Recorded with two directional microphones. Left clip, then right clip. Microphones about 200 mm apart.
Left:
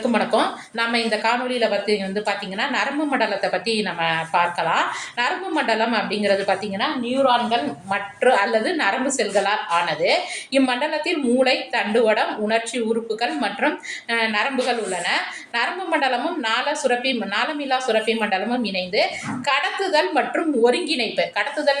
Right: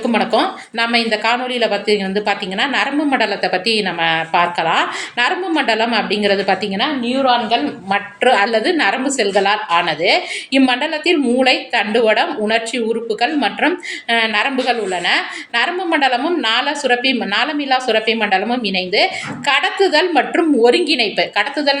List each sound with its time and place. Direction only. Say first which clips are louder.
0.1 s a woman's voice: right 6 dB; 45° right (ahead or behind)